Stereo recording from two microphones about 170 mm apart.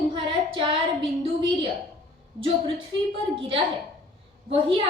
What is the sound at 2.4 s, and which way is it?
A woman's voice, 30° right (ahead or behind).